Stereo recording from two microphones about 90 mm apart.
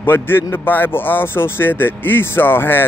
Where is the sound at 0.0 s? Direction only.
25° left (ahead or behind).